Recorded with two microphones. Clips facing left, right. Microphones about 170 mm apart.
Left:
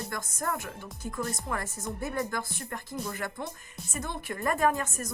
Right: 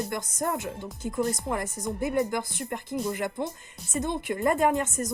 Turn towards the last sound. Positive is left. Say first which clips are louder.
# right 3 dB
turn(degrees=-20)  # may be behind; listen again after turning